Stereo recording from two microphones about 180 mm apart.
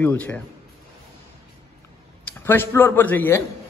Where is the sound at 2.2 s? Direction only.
10° left (ahead or behind).